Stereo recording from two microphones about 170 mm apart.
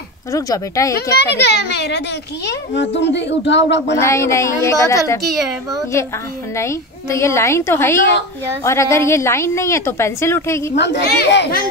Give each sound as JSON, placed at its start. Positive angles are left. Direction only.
{"t": 0.3, "sound": "speech", "side_deg": 20}
{"t": 1.1, "sound": "a child's voice", "side_deg": 75}
{"t": 4.0, "sound": "a woman's voice", "side_deg": 15}
{"t": 6.5, "sound": "a woman's voice", "side_deg": 15}
{"t": 10.8, "sound": "a child's voice", "side_deg": 90}